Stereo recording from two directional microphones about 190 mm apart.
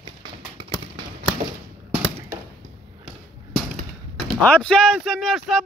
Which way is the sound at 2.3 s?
15° right (ahead or behind).